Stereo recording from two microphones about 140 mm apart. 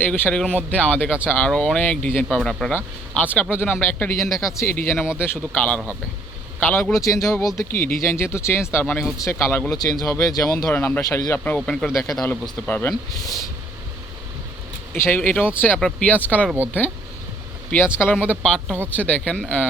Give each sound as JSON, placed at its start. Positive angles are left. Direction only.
{"t": 0.0, "sound": "speech", "side_deg": 10}
{"t": 6.9, "sound": "speech", "side_deg": 25}
{"t": 7.7, "sound": "speech", "side_deg": 90}
{"t": 8.1, "sound": "speech", "side_deg": 20}
{"t": 9.7, "sound": "speech", "side_deg": 25}
{"t": 10.6, "sound": "speech", "side_deg": 10}
{"t": 14.9, "sound": "speech", "side_deg": 15}
{"t": 17.7, "sound": "speech", "side_deg": 15}